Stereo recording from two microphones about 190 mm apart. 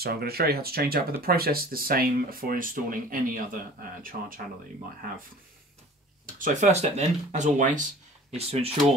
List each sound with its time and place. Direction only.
0.0 s speech: 55° right (ahead or behind)
6.2 s speech: 45° right (ahead or behind)